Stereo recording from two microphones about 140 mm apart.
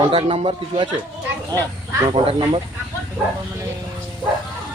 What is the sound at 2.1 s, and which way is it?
Speech, 35° right (ahead or behind).